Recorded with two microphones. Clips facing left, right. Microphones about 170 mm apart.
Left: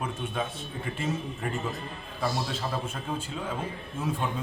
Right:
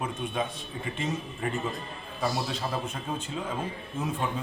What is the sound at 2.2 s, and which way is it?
A man's voice, 10° right (ahead or behind).